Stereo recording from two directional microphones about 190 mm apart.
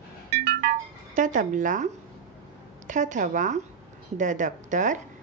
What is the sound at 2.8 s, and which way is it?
A woman's voice, 40° right (ahead or behind).